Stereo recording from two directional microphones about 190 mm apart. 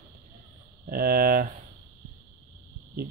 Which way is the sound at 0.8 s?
50° right (ahead or behind).